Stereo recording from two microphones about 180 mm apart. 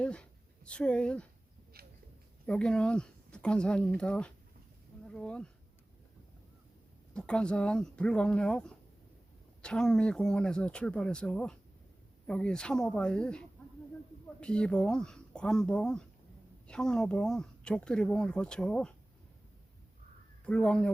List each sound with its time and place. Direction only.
0.0 s speech: 5° left (ahead or behind)
1.7 s a sound: 60° right (ahead or behind)
2.5 s speech: 5° left (ahead or behind)
7.1 s speech: 5° left (ahead or behind)
20.4 s speech: 5° left (ahead or behind)